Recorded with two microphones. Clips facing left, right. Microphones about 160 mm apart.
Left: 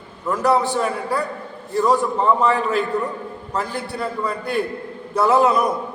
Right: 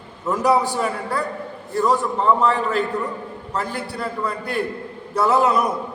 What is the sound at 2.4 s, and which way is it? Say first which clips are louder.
A man's voice: left 1 dB; centre (ahead or behind).